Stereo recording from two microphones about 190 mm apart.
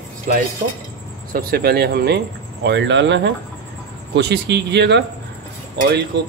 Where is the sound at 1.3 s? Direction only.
50° right (ahead or behind).